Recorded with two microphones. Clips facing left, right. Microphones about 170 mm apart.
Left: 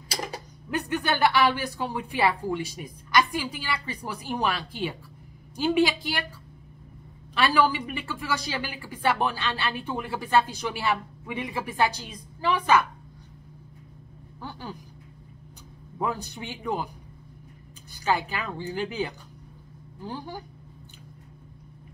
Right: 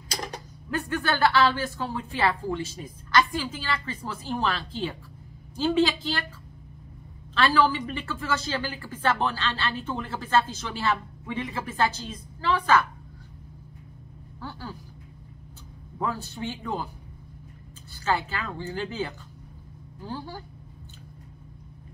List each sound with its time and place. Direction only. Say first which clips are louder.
0.1 s a sound: left 1 dB; 10° left (ahead or behind)
0.7 s a woman's voice: left 1 dB; 15° left (ahead or behind)
7.3 s a woman's voice: even; 15° left (ahead or behind)
14.4 s a sound: even; 20° left (ahead or behind)
16.0 s a woman's voice: even; 15° left (ahead or behind)
18.0 s a woman's voice: left 1 dB; 15° left (ahead or behind)